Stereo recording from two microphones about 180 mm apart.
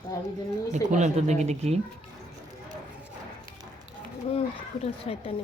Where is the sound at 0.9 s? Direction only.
40° right (ahead or behind).